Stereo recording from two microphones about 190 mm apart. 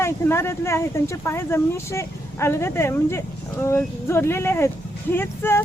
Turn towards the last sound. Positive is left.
turn(degrees=10)  # may be behind; listen again after turning